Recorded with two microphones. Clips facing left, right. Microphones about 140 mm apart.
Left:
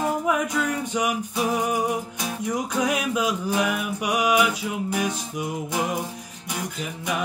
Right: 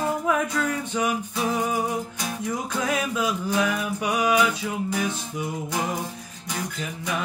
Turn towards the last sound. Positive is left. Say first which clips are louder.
# even
turn(degrees=10)  # may be behind; listen again after turning